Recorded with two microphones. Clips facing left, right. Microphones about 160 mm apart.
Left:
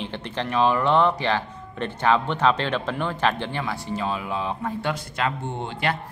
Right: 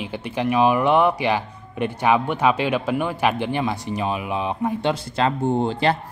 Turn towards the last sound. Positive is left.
turn(degrees=-35)  # may be behind; listen again after turning